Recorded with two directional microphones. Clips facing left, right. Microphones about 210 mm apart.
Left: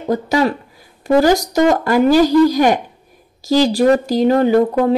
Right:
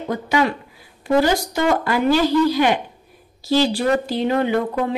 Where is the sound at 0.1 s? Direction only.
35° left (ahead or behind).